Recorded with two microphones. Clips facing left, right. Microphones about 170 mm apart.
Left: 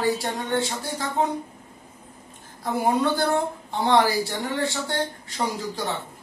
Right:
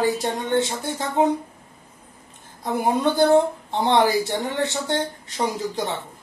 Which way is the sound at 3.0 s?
20° right (ahead or behind).